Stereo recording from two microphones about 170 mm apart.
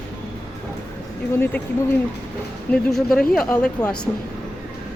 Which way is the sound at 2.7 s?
5° left (ahead or behind).